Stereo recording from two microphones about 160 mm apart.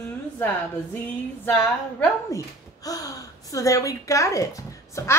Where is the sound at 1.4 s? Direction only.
10° left (ahead or behind).